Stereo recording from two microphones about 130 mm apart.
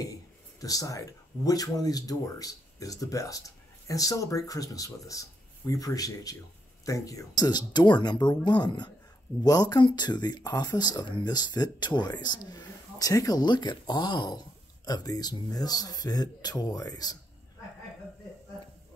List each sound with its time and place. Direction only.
0.6 s speech: 25° left (ahead or behind)